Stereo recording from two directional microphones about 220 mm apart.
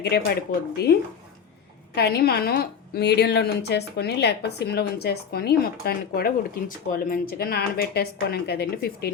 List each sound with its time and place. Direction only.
0.0 s a woman's voice: 45° left (ahead or behind)
2.0 s a woman's voice: 45° left (ahead or behind)